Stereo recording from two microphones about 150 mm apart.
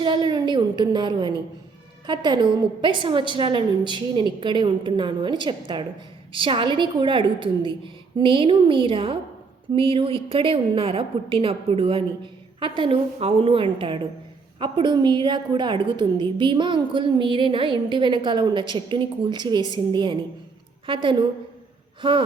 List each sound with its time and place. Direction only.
0.0 s a woman's voice: 30° right (ahead or behind)